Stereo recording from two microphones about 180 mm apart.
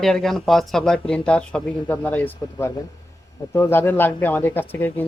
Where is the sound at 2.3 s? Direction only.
20° left (ahead or behind).